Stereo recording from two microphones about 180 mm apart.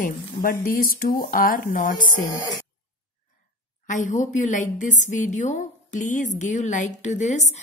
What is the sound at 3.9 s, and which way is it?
A woman's voice, 45° left (ahead or behind).